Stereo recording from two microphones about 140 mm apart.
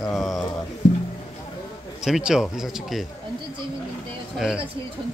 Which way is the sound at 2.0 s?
5° right (ahead or behind).